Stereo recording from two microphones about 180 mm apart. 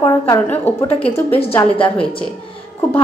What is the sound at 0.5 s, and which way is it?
A woman's voice, 10° left (ahead or behind).